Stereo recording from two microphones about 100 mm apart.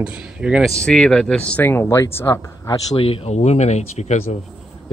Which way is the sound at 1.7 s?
25° left (ahead or behind).